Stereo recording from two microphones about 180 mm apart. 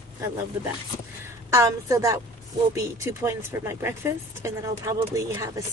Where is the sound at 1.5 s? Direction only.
15° right (ahead or behind).